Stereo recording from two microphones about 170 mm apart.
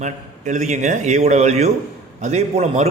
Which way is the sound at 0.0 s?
45° right (ahead or behind).